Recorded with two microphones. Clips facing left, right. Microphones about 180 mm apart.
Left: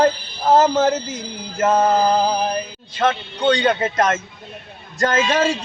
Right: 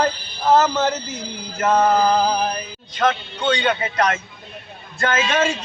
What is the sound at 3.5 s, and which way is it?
Speech, 40° left (ahead or behind).